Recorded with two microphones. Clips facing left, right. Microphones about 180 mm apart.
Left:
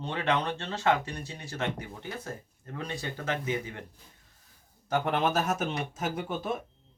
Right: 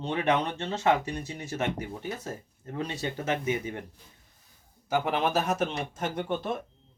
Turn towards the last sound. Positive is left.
turn(degrees=5)  # may be behind; listen again after turning